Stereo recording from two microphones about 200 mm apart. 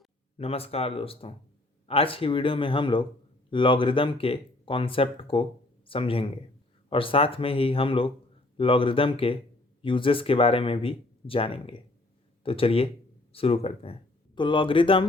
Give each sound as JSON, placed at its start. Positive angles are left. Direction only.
{"t": 0.3, "sound": "speech", "side_deg": 30}